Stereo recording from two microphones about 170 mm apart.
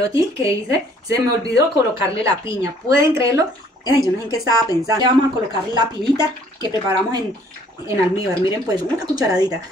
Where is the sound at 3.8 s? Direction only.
20° left (ahead or behind).